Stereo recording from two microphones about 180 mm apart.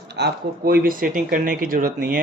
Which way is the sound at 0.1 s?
65° right (ahead or behind).